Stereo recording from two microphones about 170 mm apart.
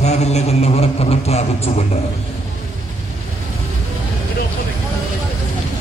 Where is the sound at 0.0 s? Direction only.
40° left (ahead or behind).